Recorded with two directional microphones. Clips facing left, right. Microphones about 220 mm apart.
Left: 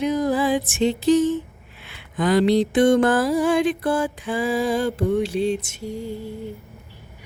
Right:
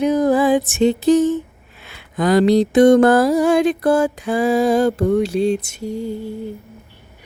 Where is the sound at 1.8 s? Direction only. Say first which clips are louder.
Right 3 dB; 40° right (ahead or behind).